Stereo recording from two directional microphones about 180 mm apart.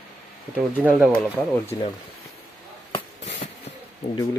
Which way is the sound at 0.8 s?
10° right (ahead or behind).